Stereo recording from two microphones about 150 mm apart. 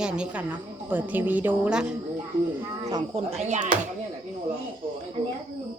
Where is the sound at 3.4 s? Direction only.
50° right (ahead or behind).